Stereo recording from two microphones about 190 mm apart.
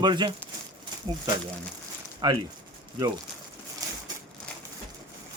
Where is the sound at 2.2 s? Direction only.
25° right (ahead or behind).